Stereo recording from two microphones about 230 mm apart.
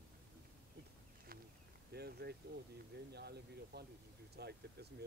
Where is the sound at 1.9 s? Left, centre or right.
Right.